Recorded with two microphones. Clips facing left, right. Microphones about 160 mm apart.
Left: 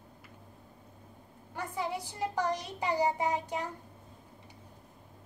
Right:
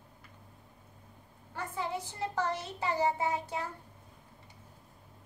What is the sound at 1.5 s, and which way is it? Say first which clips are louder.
A child's voice: left 1 dB; 15° left (ahead or behind).